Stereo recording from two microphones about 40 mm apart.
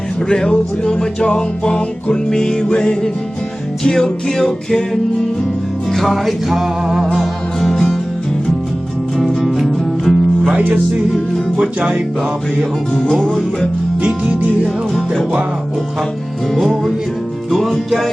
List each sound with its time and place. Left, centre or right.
0.3 s music: left
5.9 s music: centre
6.1 s music: centre
7.2 s music: centre
9.5 s music: centre
10.0 s music: centre
10.6 s music: right
11.8 s music: right
14.3 s music: right
16.6 s music: centre